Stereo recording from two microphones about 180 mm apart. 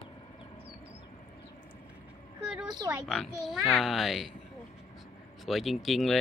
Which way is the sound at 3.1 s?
Centre (ahead or behind).